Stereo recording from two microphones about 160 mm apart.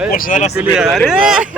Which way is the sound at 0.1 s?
60° left (ahead or behind).